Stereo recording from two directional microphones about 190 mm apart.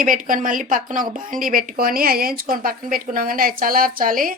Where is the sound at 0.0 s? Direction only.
45° right (ahead or behind).